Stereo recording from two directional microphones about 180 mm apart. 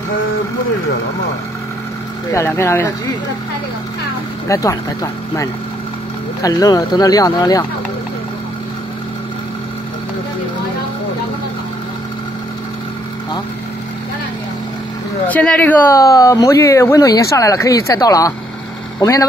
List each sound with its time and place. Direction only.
2.3 s speech: 15° left (ahead or behind)
4.5 s speech: 15° left (ahead or behind)
15.2 s speech: 5° left (ahead or behind)